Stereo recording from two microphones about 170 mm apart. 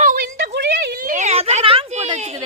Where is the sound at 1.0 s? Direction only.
45° right (ahead or behind).